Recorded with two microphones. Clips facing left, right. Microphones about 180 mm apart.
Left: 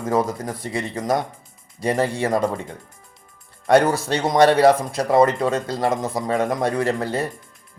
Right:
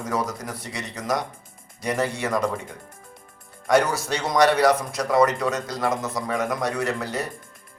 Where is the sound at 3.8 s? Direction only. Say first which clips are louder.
Left 4 dB; 55° left (ahead or behind).